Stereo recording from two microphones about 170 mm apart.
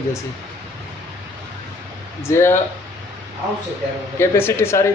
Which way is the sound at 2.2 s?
15° left (ahead or behind).